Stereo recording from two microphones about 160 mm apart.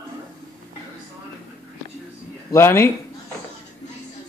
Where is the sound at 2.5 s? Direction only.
15° left (ahead or behind).